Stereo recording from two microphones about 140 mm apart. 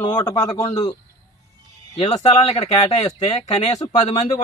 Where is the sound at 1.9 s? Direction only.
50° left (ahead or behind).